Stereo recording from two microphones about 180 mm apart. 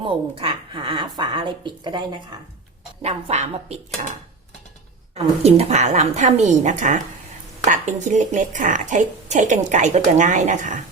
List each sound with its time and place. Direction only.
0.0 s a woman's voice: 30° right (ahead or behind)